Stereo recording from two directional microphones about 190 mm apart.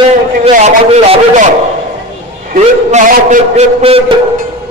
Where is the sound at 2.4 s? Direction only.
40° right (ahead or behind).